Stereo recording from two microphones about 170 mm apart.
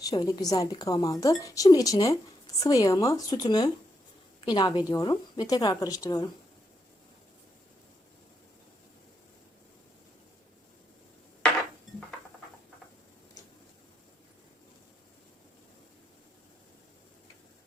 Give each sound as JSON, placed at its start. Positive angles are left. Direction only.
{"t": 0.0, "sound": "a woman's voice", "side_deg": 20}